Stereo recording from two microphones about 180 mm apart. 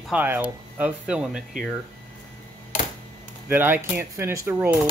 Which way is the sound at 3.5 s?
10° right (ahead or behind).